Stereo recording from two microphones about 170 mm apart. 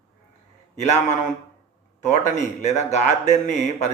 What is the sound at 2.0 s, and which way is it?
Speech, 45° left (ahead or behind).